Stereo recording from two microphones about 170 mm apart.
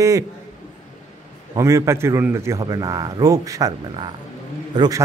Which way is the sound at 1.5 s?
15° right (ahead or behind).